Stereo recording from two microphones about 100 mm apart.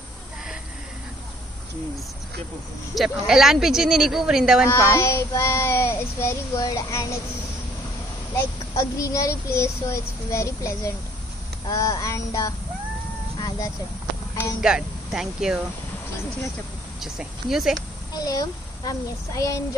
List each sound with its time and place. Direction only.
2.9 s speech: centre (ahead or behind)
4.6 s a child's voice: 25° left (ahead or behind)
6.5 s a child's voice: 35° left (ahead or behind)
8.4 s a child's voice: 30° left (ahead or behind)
14.6 s speech: 5° right (ahead or behind)
17.0 s speech: 5° right (ahead or behind)
18.1 s a child's voice: 40° left (ahead or behind)